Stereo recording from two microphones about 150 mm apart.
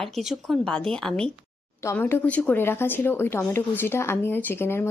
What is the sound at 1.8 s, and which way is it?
Speech, 15° left (ahead or behind).